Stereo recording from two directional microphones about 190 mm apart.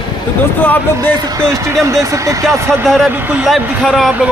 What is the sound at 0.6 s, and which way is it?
Speech, 10° left (ahead or behind).